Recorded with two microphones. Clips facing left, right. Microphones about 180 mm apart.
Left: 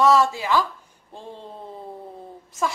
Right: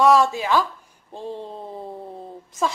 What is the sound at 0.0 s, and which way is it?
Speech, 15° right (ahead or behind).